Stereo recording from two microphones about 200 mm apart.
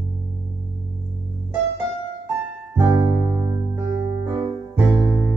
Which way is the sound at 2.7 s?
10° right (ahead or behind).